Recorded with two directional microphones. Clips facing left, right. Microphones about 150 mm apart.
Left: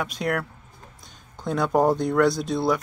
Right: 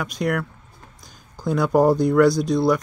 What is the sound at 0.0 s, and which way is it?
Speech, centre (ahead or behind).